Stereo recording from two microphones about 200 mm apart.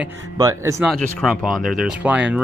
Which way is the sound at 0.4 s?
15° right (ahead or behind).